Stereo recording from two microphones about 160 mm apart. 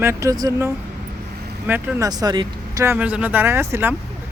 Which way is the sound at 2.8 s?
10° right (ahead or behind).